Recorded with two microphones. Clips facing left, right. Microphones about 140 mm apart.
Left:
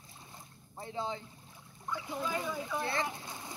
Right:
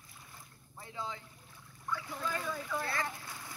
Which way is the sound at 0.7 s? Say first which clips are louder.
Left 5 dB; 30° left (ahead or behind).